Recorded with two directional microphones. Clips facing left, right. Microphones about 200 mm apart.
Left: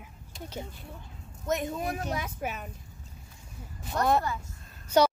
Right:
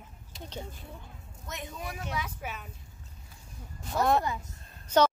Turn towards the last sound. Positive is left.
turn(degrees=10)  # may be behind; listen again after turning